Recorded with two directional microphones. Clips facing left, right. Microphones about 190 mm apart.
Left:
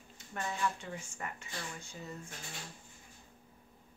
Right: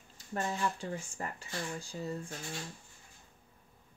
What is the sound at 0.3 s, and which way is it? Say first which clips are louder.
Speech: right 2 dB; 35° right (ahead or behind).